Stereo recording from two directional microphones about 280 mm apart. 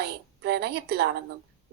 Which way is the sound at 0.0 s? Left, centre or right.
Right.